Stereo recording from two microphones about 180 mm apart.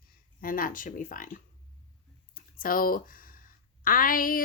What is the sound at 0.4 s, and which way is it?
Speech, 50° left (ahead or behind).